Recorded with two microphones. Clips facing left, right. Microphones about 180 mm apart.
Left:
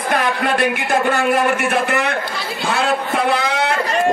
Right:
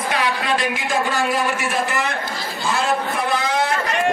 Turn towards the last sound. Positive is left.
turn(degrees=65)  # may be behind; listen again after turning